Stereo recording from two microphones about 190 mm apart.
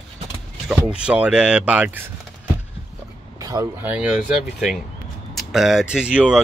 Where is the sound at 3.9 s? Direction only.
5° right (ahead or behind).